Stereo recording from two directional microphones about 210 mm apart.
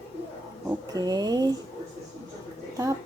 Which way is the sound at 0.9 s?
20° right (ahead or behind).